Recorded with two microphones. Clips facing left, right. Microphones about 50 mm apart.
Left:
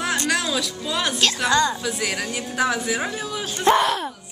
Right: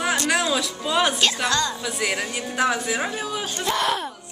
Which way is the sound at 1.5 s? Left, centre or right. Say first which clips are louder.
Left 4 dB; centre.